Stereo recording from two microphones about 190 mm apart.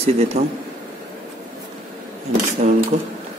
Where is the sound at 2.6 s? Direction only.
40° right (ahead or behind).